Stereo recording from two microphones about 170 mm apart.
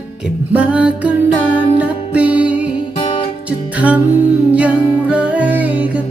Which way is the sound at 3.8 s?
10° right (ahead or behind).